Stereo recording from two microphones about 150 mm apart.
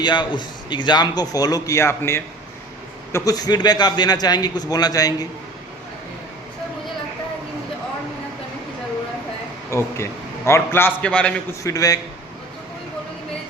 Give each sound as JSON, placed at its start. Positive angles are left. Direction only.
{"t": 0.0, "sound": "a man's voice", "side_deg": 30}
{"t": 9.6, "sound": "a man's voice", "side_deg": 20}
{"t": 11.6, "sound": "a man's voice", "side_deg": 25}